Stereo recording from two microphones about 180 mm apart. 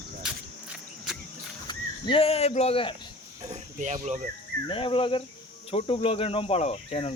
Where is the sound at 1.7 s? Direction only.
25° left (ahead or behind).